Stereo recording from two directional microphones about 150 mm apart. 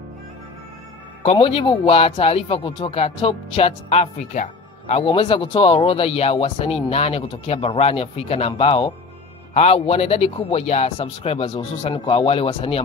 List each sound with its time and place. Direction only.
1.2 s speech: 40° left (ahead or behind)
5.0 s speech: 35° left (ahead or behind)